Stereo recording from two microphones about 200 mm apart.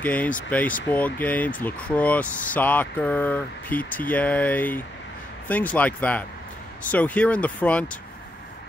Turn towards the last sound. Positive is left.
turn(degrees=5)  # may be behind; listen again after turning